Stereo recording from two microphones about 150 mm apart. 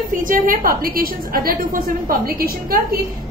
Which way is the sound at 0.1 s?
65° right (ahead or behind).